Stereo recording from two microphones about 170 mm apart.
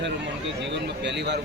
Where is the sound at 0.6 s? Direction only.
90° right.